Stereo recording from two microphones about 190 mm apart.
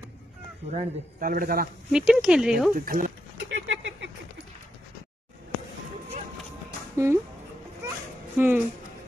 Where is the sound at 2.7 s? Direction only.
45° right (ahead or behind).